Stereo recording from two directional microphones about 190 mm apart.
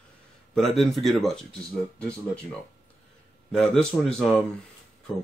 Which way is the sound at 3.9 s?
10° left (ahead or behind).